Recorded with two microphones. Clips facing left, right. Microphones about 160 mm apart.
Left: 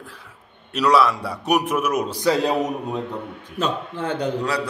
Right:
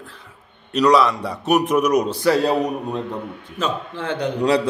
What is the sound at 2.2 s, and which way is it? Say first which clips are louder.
Speech: right 2 dB; 15° left (ahead or behind).